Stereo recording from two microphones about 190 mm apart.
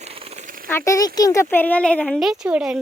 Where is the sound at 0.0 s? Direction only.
30° right (ahead or behind).